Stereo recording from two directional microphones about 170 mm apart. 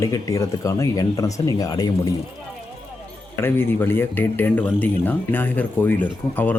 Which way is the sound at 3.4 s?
15° left (ahead or behind).